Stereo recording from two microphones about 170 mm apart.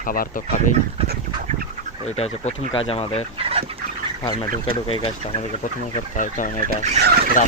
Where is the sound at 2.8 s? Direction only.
35° left (ahead or behind).